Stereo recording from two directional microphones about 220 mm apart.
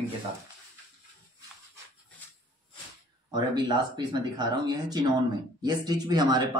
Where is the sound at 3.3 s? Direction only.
20° right (ahead or behind).